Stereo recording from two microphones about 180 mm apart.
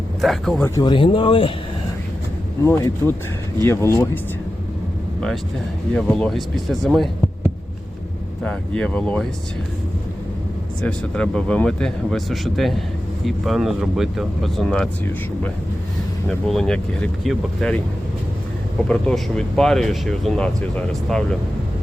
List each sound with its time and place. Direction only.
0.2 s speech: centre (ahead or behind)
0.6 s speech: 25° left (ahead or behind)
2.6 s speech: 15° left (ahead or behind)
5.9 s speech: 5° left (ahead or behind)
8.4 s speech: 5° left (ahead or behind)
10.8 s speech: 5° left (ahead or behind)
16.5 s speech: 5° left (ahead or behind)
18.9 s speech: 5° left (ahead or behind)